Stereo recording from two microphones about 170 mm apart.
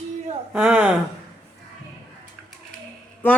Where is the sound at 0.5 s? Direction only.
5° right (ahead or behind).